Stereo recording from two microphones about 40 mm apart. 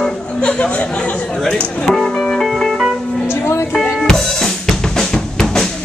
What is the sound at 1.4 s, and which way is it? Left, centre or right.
Speech, centre.